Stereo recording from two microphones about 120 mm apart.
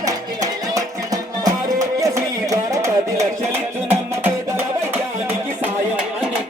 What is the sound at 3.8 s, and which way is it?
Music, 15° right (ahead or behind).